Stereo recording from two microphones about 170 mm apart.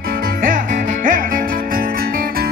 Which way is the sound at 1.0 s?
55° right (ahead or behind).